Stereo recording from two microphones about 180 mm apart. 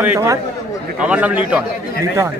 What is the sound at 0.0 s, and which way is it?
Speech, 10° right (ahead or behind).